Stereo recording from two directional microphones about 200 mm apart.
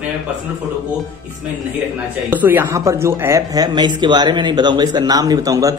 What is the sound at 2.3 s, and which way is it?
Speech, 10° right (ahead or behind).